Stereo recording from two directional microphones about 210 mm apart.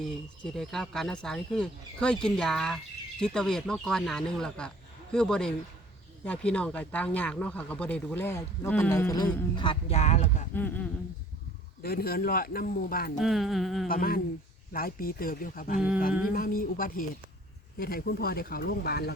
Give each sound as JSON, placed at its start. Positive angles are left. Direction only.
{"t": 0.1, "sound": "speech", "side_deg": 0}
{"t": 10.5, "sound": "speech", "side_deg": 10}
{"t": 11.8, "sound": "speech", "side_deg": 45}
{"t": 13.1, "sound": "speech", "side_deg": 0}
{"t": 13.8, "sound": "speech", "side_deg": 45}